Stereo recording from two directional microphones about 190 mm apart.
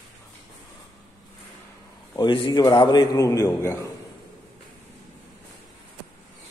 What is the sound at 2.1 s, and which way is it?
A man's voice, 25° left (ahead or behind).